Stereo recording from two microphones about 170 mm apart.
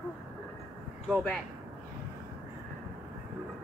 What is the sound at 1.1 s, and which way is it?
Speech, 5° left (ahead or behind).